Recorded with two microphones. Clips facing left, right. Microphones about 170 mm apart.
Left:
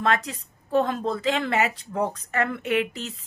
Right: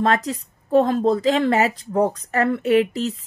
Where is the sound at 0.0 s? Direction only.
35° right (ahead or behind).